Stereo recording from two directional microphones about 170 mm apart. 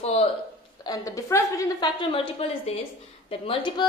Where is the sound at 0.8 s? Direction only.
20° left (ahead or behind).